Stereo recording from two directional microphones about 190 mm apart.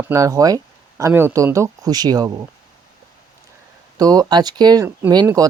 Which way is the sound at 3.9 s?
20° right (ahead or behind).